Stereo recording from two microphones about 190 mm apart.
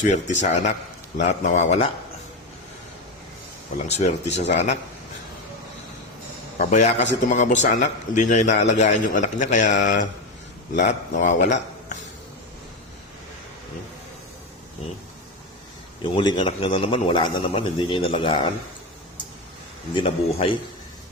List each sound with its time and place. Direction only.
0.0 s a man's voice: 40° left (ahead or behind)
3.8 s a man's voice: 35° left (ahead or behind)
6.6 s a man's voice: 35° left (ahead or behind)
16.1 s a man's voice: 25° left (ahead or behind)
19.9 s a man's voice: 30° left (ahead or behind)